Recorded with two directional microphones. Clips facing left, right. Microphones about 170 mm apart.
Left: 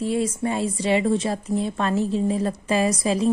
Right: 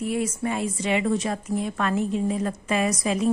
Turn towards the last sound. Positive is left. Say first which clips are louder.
# left 2 dB
turn(degrees=30)  # may be behind; listen again after turning